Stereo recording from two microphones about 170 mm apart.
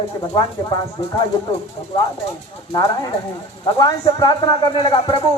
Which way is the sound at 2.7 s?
25° left (ahead or behind).